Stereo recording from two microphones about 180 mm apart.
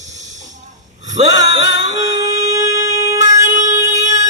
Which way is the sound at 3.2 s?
45° right (ahead or behind).